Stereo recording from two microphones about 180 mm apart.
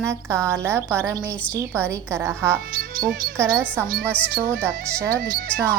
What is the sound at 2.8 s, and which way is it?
Speech, 55° right (ahead or behind).